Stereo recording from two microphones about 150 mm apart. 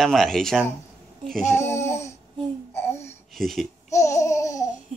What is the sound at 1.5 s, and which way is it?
Speech, 15° left (ahead or behind).